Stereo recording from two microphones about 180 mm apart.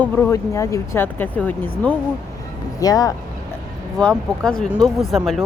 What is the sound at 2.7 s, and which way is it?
Speech, 20° left (ahead or behind).